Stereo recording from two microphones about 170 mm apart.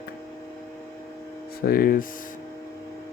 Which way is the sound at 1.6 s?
60° left (ahead or behind).